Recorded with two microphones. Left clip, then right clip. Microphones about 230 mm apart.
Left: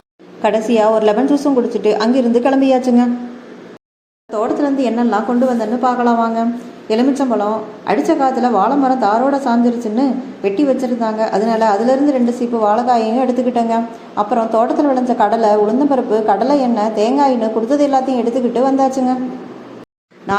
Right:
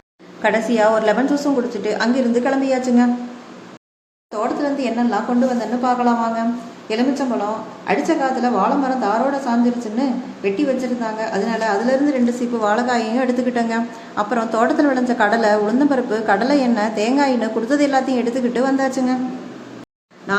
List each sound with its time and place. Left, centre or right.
0.4 s a woman's voice: centre
4.3 s a woman's voice: centre
7.9 s a woman's voice: centre